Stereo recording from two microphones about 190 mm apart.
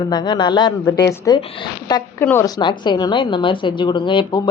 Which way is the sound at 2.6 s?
25° left (ahead or behind).